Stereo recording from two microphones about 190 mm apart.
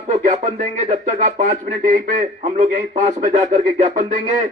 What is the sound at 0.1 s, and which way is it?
Speech, 40° right (ahead or behind).